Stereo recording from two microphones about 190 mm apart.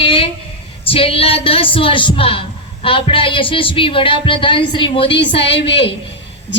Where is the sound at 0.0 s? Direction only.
30° left (ahead or behind).